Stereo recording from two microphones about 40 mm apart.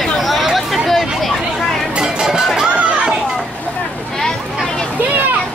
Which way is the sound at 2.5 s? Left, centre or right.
Centre.